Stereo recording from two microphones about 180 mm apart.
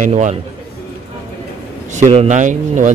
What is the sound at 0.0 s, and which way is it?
Speech, 40° right (ahead or behind).